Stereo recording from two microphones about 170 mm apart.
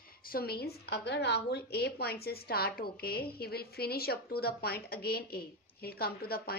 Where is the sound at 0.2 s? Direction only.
60° left (ahead or behind).